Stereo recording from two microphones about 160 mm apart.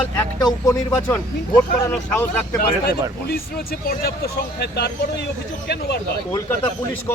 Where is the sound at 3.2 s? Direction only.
70° left (ahead or behind); by 6.0 s 90° left.